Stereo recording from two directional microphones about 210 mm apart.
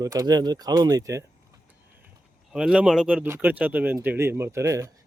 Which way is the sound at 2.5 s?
5° right (ahead or behind).